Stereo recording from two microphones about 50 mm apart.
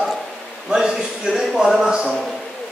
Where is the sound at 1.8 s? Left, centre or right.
Centre.